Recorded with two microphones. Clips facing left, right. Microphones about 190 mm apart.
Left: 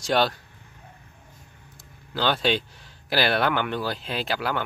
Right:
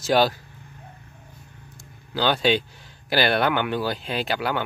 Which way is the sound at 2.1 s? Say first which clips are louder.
Right 3 dB; centre (ahead or behind).